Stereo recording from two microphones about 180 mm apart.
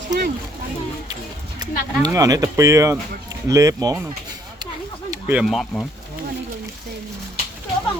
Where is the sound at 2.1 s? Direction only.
20° right (ahead or behind).